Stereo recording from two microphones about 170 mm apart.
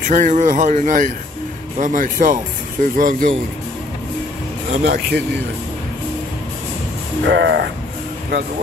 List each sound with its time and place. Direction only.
0.0 s speech: 50° right (ahead or behind)
4.8 s speech: 70° right (ahead or behind)
7.2 s a sound: 90° right